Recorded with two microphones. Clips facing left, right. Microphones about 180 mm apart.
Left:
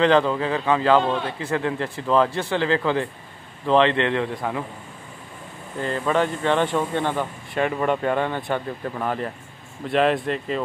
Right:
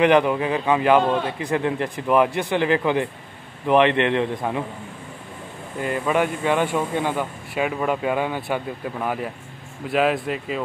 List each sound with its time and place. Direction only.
0.0 s a man's voice: 15° right (ahead or behind)
5.8 s speech: 10° right (ahead or behind)